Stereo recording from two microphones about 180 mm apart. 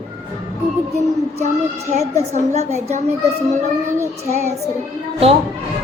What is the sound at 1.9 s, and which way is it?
Speech, 35° right (ahead or behind).